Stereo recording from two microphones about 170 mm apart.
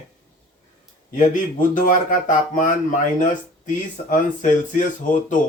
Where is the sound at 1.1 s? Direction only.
50° left (ahead or behind).